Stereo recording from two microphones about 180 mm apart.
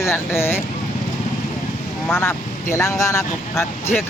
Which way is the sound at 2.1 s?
15° left (ahead or behind).